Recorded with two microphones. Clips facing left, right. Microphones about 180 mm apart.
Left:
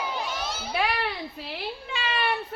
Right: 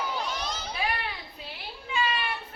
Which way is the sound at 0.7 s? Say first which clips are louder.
Left 6 dB; 75° left (ahead or behind).